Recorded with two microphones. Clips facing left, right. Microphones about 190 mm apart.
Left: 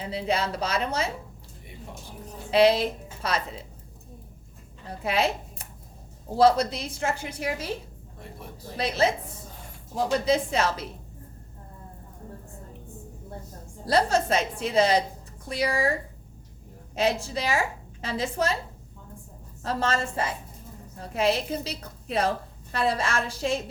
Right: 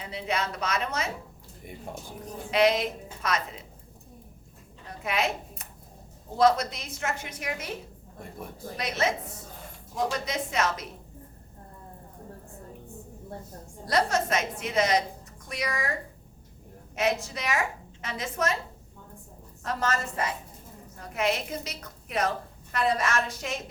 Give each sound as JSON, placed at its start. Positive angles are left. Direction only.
{"t": 0.0, "sound": "a woman's voice", "side_deg": 30}
{"t": 2.5, "sound": "a woman's voice", "side_deg": 30}
{"t": 4.9, "sound": "a sound", "side_deg": 30}
{"t": 6.3, "sound": "a woman's voice", "side_deg": 30}
{"t": 8.8, "sound": "a woman's voice", "side_deg": 30}
{"t": 13.8, "sound": "a woman's voice", "side_deg": 30}
{"t": 16.9, "sound": "a woman's voice", "side_deg": 30}
{"t": 19.6, "sound": "a woman's voice", "side_deg": 30}